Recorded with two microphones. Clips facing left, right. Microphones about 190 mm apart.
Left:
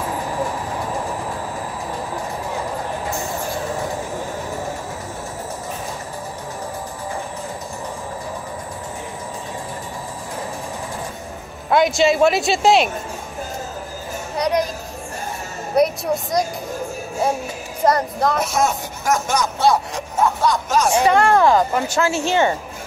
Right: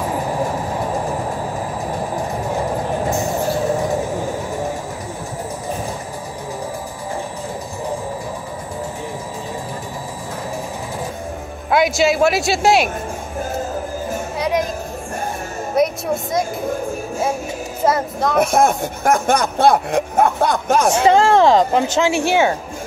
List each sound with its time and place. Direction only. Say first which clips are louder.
11.7 s a man's voice: even; 5° right (ahead or behind)
14.3 s music: left 1 dB; centre (ahead or behind)
15.7 s music: left 1 dB; centre (ahead or behind)
17.8 s speech: even; 5° right (ahead or behind)
18.4 s speech: right 5 dB; 55° right (ahead or behind)
21.1 s speech: right 3 dB; 25° right (ahead or behind); by 22.6 s 10° right (ahead or behind)